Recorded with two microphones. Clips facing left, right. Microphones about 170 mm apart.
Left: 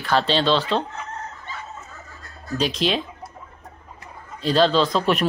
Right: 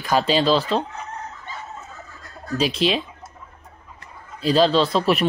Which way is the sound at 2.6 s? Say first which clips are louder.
Right 2 dB; 5° right (ahead or behind).